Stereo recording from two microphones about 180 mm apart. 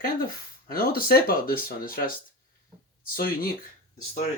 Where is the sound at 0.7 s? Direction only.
55° left (ahead or behind).